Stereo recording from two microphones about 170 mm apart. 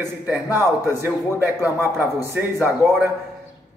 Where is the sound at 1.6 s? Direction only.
10° right (ahead or behind).